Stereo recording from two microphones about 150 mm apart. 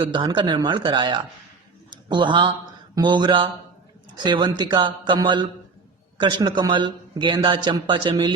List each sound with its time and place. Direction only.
0.0 s a man's voice: 30° right (ahead or behind)
1.9 s a sound: 30° right (ahead or behind)
2.9 s a man's voice: 30° right (ahead or behind)